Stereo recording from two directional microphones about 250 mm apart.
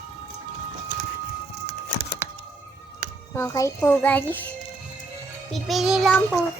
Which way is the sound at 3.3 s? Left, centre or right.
Centre.